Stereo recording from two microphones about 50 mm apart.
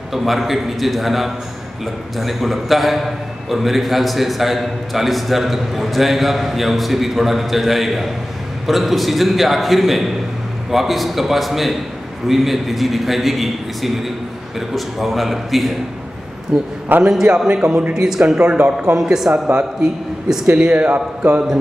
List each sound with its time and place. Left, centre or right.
0.1 s a man's voice: centre
17.0 s speech: centre
18.9 s speech: centre
19.3 s a man's voice: centre
20.7 s a man's voice: right